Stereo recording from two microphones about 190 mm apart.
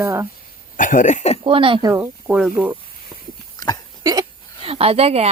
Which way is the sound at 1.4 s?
30° right (ahead or behind).